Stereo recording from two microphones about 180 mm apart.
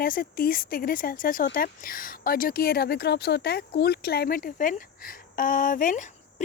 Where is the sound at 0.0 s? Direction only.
55° left (ahead or behind).